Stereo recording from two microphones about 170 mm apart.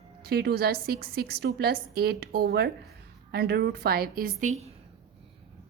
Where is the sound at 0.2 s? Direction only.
70° right (ahead or behind); by 4.5 s 50° right (ahead or behind).